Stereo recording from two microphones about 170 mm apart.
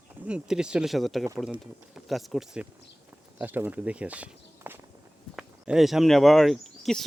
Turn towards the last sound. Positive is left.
turn(degrees=0)  # may be behind; listen again after turning